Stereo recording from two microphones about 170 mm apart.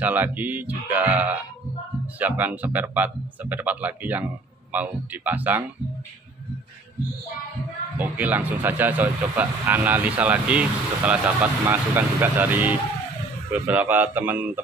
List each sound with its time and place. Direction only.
0.0 s speech: 10° right (ahead or behind)
8.0 s speech: 10° right (ahead or behind)